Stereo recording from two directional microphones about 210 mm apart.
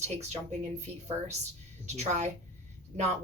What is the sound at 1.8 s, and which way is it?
Speech, 30° right (ahead or behind).